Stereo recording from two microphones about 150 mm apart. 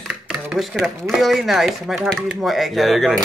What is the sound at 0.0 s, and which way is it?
Speech, 5° right (ahead or behind).